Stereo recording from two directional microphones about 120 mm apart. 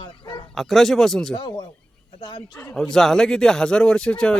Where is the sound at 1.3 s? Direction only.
35° left (ahead or behind).